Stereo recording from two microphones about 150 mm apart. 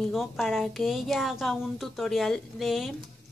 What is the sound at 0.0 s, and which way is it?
A woman's voice, centre (ahead or behind).